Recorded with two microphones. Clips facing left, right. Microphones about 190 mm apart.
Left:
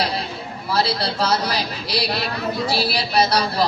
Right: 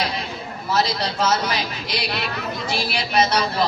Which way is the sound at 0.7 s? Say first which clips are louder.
Left 1 dB; 35° left (ahead or behind).